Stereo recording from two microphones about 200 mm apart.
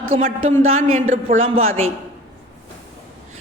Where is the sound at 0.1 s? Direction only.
30° right (ahead or behind).